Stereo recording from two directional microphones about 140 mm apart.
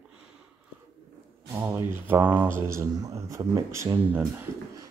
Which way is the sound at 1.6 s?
15° right (ahead or behind).